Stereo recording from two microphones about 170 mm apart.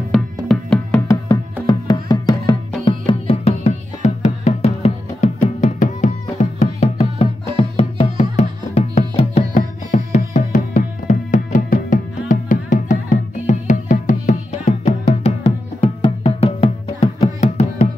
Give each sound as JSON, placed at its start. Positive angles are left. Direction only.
{"t": 0.1, "sound": "music", "side_deg": 5}
{"t": 1.0, "sound": "music", "side_deg": 20}